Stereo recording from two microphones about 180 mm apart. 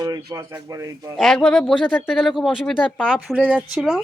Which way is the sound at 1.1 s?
Centre (ahead or behind).